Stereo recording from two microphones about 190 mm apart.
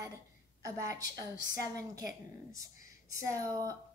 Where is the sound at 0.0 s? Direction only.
20° right (ahead or behind).